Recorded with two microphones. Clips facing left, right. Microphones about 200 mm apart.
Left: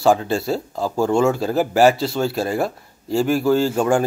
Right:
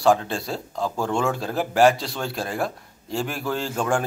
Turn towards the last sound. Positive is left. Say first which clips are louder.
# left 7 dB
turn(degrees=5)  # may be behind; listen again after turning